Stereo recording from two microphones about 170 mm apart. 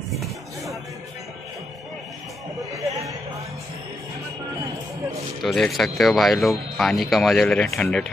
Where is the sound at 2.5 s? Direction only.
20° right (ahead or behind).